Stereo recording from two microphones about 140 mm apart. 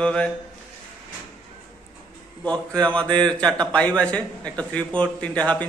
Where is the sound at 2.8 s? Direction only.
10° left (ahead or behind).